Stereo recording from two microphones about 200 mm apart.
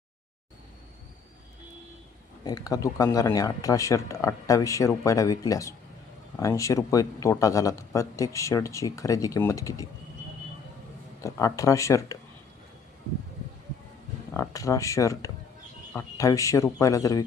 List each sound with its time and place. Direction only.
2.4 s speech: 20° left (ahead or behind)
11.2 s speech: 15° left (ahead or behind)
14.3 s speech: 15° left (ahead or behind)